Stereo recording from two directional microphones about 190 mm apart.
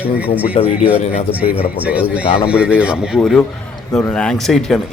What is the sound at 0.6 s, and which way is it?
Speech, 30° left (ahead or behind).